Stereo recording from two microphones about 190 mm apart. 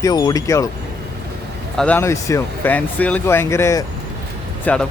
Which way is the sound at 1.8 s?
10° left (ahead or behind).